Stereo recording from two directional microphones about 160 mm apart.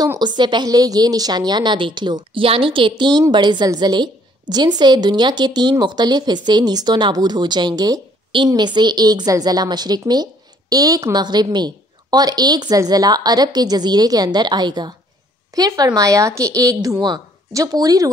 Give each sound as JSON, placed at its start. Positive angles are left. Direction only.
{"t": 0.0, "sound": "a woman's voice", "side_deg": -25}